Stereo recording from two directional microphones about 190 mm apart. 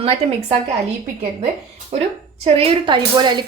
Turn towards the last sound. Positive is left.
turn(degrees=-25)  # may be behind; listen again after turning